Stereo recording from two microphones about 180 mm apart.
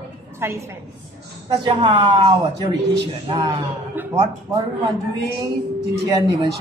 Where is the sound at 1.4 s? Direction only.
25° right (ahead or behind).